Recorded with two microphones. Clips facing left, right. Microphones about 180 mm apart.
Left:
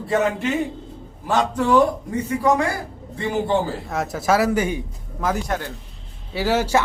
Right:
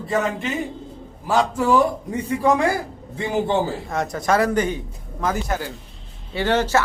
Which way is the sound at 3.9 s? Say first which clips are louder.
Left 2 dB; 5° left (ahead or behind).